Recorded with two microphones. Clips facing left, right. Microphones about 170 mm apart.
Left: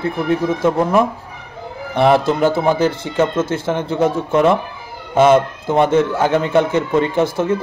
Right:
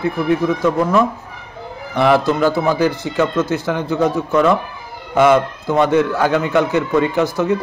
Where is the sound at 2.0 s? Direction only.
25° left (ahead or behind).